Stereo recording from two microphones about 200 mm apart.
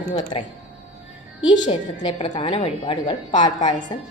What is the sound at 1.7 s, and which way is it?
A woman's voice, 25° left (ahead or behind).